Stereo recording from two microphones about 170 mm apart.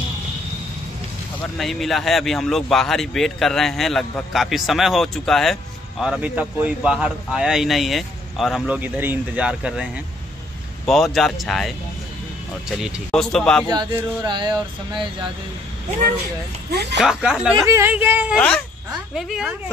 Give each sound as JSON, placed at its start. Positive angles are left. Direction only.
{"t": 1.6, "sound": "speech", "side_deg": 0}
{"t": 10.9, "sound": "speech", "side_deg": 0}
{"t": 13.7, "sound": "speech", "side_deg": -25}
{"t": 17.0, "sound": "speech", "side_deg": -5}
{"t": 17.6, "sound": "speech", "side_deg": -15}